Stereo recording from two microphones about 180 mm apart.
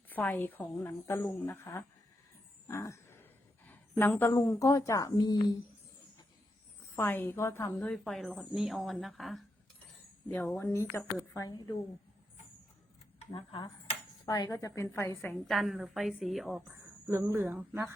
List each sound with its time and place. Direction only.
0.1 s a woman's voice: 10° left (ahead or behind)
2.6 s a sound: 15° left (ahead or behind)
3.7 s a woman's voice: 10° left (ahead or behind)
6.9 s a woman's voice: 10° left (ahead or behind)
13.1 s a woman's voice: 25° left (ahead or behind); by 16.6 s centre (ahead or behind)
17.1 s speech: 15° right (ahead or behind)